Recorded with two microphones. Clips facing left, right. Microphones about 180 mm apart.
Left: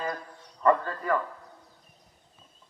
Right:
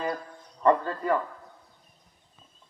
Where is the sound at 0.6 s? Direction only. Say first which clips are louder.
Right 1 dB; 25° right (ahead or behind).